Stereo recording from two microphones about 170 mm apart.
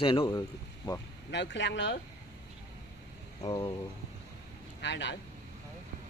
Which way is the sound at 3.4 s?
35° left (ahead or behind).